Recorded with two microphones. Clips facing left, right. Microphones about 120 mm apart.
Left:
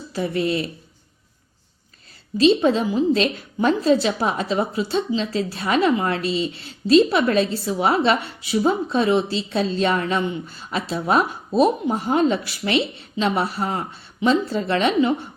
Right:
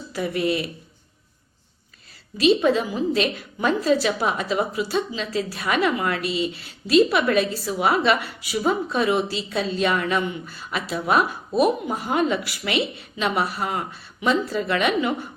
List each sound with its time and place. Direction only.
0.1 s a woman's voice: 30° left (ahead or behind)
2.4 s a woman's voice: 30° left (ahead or behind)